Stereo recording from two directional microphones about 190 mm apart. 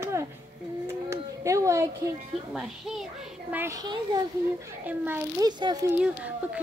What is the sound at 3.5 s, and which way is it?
Speech, 10° right (ahead or behind).